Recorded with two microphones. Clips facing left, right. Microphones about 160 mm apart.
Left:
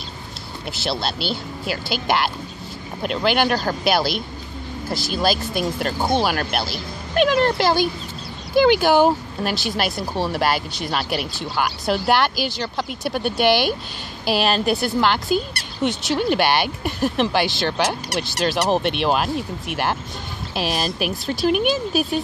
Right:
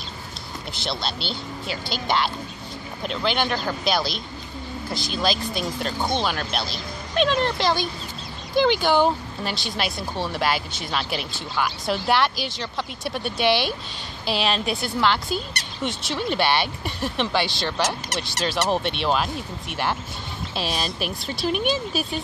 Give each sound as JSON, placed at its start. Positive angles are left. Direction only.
{"t": 0.7, "sound": "speech", "side_deg": 5}
{"t": 5.6, "sound": "speech", "side_deg": 55}
{"t": 6.0, "sound": "speech", "side_deg": 5}
{"t": 11.1, "sound": "speech", "side_deg": 5}